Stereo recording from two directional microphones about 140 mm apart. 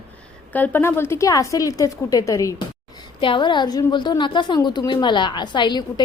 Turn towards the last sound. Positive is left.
turn(degrees=30)  # may be behind; listen again after turning